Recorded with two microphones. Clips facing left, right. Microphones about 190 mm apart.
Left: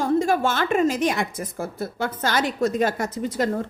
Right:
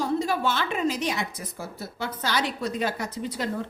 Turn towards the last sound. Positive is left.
turn(degrees=45)  # may be behind; listen again after turning